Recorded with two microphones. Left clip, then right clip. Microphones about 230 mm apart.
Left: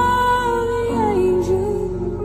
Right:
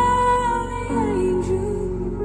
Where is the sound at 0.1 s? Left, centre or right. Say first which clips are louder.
Left 1 dB; right.